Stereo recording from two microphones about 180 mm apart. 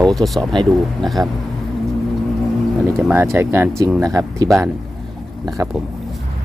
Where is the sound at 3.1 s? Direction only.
10° right (ahead or behind).